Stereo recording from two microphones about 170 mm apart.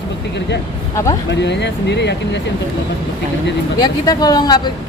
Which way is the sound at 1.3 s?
90° left.